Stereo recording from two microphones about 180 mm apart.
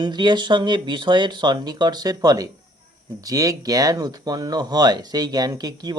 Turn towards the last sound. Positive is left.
turn(degrees=-20)  # may be behind; listen again after turning